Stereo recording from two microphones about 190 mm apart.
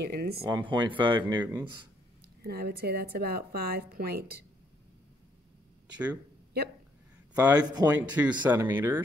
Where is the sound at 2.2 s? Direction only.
55° right (ahead or behind).